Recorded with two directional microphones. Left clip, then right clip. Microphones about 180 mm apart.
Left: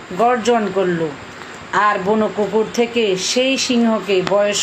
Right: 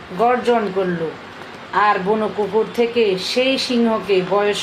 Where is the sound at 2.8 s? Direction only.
50° left (ahead or behind).